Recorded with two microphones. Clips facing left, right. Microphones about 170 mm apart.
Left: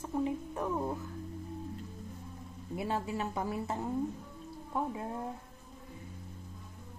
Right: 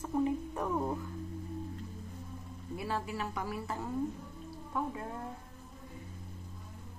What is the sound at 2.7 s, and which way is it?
A woman's voice, 25° left (ahead or behind).